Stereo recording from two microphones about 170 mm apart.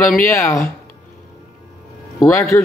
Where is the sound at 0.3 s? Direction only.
15° left (ahead or behind).